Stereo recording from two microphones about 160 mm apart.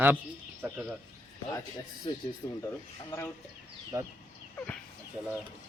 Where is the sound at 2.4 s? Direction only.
20° left (ahead or behind).